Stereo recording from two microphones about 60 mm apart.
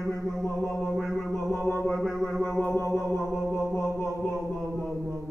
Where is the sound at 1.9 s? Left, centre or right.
Centre.